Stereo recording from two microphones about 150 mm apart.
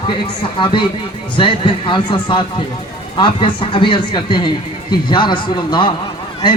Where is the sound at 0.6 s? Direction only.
35° left (ahead or behind).